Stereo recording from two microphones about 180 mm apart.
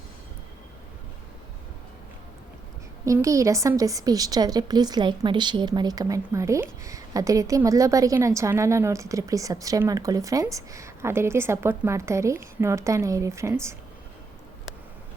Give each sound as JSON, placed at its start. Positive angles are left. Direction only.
{"t": 3.1, "sound": "a woman's voice", "side_deg": -15}